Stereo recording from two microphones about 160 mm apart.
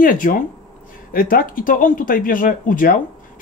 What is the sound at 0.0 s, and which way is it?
Speech, 60° left (ahead or behind).